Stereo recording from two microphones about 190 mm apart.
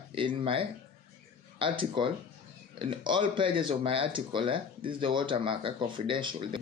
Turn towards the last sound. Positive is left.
turn(degrees=-25)  # may be behind; listen again after turning